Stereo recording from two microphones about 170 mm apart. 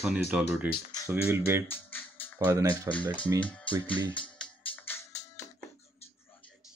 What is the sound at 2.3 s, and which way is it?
Speech, 15° right (ahead or behind).